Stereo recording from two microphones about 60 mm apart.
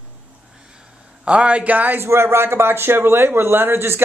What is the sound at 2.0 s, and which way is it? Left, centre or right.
Speech, right.